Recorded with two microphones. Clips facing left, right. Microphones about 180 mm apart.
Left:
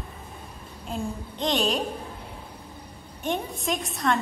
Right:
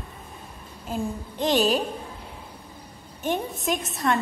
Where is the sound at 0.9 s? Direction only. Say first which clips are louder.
Right 2 dB; 5° right (ahead or behind).